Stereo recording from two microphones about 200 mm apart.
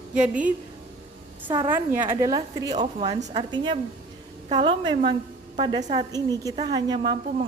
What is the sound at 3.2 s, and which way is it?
A woman's voice, 30° right (ahead or behind).